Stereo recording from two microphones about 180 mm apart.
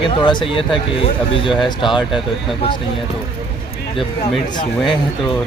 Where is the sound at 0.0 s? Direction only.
25° left (ahead or behind).